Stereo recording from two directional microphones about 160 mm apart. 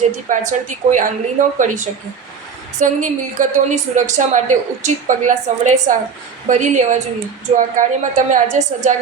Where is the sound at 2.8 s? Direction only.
50° right (ahead or behind).